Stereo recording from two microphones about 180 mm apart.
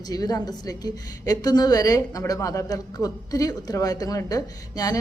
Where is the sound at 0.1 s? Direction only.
20° left (ahead or behind).